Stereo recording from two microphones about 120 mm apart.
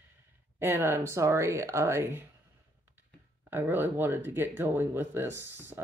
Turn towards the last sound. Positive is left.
turn(degrees=-20)  # may be behind; listen again after turning